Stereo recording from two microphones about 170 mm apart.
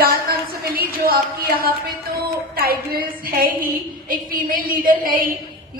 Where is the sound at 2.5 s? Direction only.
60° right (ahead or behind).